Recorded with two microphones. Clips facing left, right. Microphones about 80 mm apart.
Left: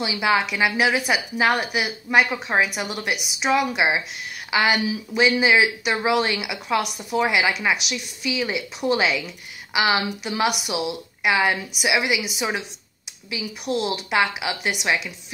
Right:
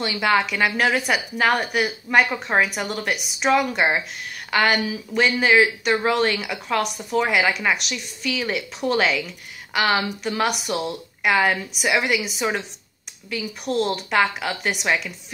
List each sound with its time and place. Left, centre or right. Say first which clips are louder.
0.0 s a woman's voice: right 1 dB; centre